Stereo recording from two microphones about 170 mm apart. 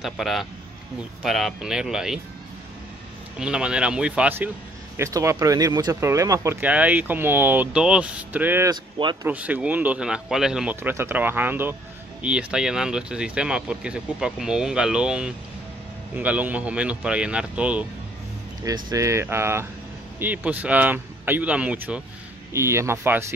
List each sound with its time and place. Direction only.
0.0 s speech: centre (ahead or behind)
3.3 s speech: 5° right (ahead or behind)
18.6 s speech: 20° right (ahead or behind)